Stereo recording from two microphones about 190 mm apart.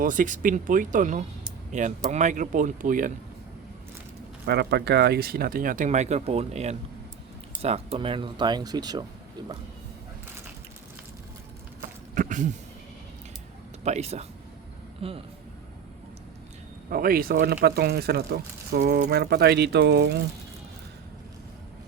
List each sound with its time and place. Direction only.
0.0 s speech: 45° right (ahead or behind)
4.4 s speech: 60° right (ahead or behind); by 9.0 s 20° right (ahead or behind)
11.8 s a sound: 45° right (ahead or behind)
13.8 s speech: 35° right (ahead or behind)
16.9 s speech: 50° right (ahead or behind)